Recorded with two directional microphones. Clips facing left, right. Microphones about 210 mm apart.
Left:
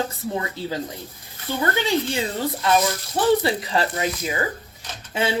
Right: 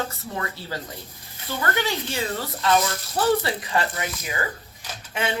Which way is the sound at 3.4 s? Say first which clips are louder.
Left 3 dB; 25° left (ahead or behind).